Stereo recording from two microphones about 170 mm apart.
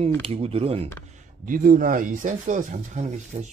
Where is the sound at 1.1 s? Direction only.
50° right (ahead or behind).